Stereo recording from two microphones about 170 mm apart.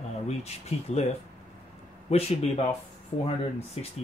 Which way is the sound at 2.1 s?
35° left (ahead or behind).